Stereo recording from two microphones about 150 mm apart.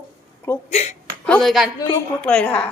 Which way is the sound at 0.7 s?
50° left (ahead or behind).